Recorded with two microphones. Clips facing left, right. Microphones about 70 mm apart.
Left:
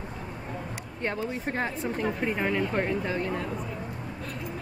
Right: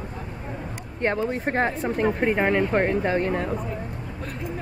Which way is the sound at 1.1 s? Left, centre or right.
Right.